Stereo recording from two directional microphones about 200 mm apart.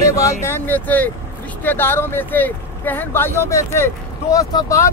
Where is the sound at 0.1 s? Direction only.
15° left (ahead or behind).